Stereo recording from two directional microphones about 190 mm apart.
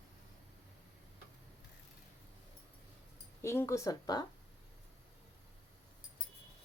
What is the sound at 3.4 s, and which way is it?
Speech, 15° left (ahead or behind).